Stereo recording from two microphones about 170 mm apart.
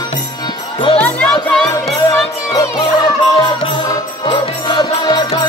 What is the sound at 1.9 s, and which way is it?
Music, 25° left (ahead or behind).